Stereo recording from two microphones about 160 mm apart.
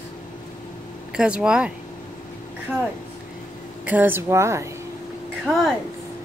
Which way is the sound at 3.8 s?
10° right (ahead or behind).